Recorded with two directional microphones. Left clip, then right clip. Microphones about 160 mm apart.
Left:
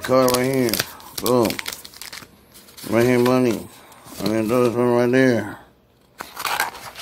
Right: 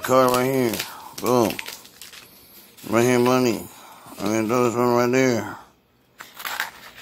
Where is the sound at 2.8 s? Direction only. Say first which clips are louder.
Left 1 dB; 5° right (ahead or behind).